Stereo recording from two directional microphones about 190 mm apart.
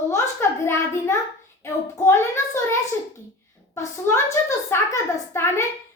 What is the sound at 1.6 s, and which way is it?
Child singing, 15° left (ahead or behind).